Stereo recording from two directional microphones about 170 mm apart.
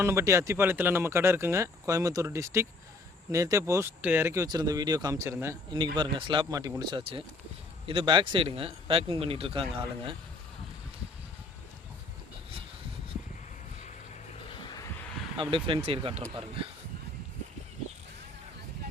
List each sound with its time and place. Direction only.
0.0 s speech: 15° right (ahead or behind)
5.7 s speech: 25° right (ahead or behind)
15.4 s speech: 30° right (ahead or behind)